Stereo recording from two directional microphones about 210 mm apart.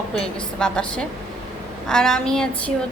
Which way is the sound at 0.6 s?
5° left (ahead or behind).